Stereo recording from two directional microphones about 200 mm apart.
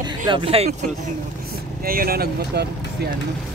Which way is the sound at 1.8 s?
45° right (ahead or behind).